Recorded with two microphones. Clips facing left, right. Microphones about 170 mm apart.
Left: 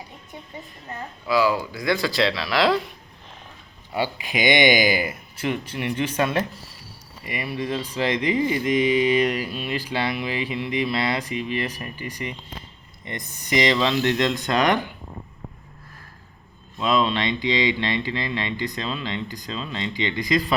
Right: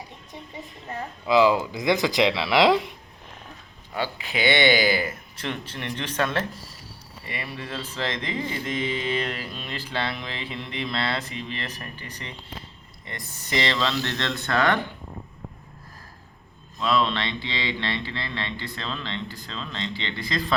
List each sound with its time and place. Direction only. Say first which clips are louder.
1.3 s speech: right 2 dB; 20° right (ahead or behind)
3.9 s speech: left 3 dB; 15° left (ahead or behind)
16.8 s speech: left 2 dB; 15° left (ahead or behind)